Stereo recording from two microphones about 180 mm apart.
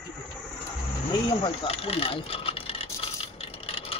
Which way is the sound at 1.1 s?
30° left (ahead or behind).